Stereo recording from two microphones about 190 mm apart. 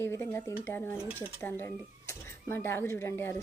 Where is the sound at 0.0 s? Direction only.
15° left (ahead or behind).